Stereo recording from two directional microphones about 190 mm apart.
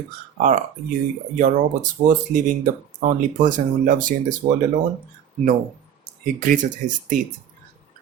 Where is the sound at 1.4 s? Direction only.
45° right (ahead or behind).